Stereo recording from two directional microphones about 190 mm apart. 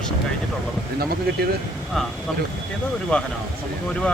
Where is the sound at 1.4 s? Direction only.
55° right (ahead or behind).